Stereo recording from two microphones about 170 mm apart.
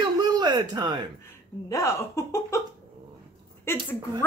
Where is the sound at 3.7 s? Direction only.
15° left (ahead or behind).